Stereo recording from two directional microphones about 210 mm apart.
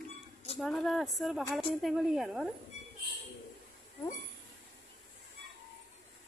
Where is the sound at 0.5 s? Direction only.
Centre (ahead or behind).